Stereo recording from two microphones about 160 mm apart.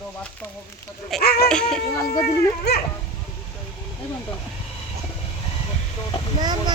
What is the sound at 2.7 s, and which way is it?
Dog, 90° left.